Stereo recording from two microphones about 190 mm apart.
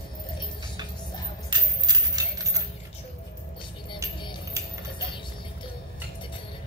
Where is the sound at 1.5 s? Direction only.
20° right (ahead or behind).